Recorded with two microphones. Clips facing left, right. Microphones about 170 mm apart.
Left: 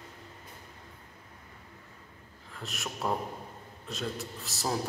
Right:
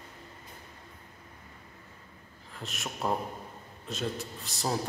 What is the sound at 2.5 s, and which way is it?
A man's voice, centre (ahead or behind).